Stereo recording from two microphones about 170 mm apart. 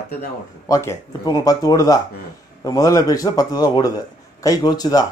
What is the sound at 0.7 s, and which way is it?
A man's voice, 20° left (ahead or behind).